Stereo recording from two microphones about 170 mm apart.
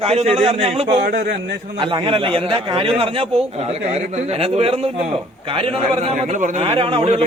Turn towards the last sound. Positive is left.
turn(degrees=-35)  # may be behind; listen again after turning